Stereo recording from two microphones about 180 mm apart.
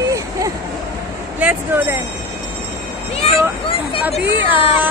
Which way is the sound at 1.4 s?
10° right (ahead or behind).